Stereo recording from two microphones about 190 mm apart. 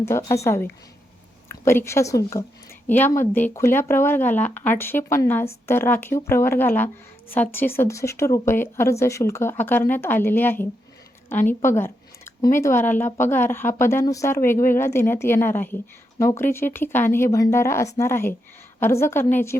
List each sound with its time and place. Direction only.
0.0 s a woman's voice: 15° left (ahead or behind)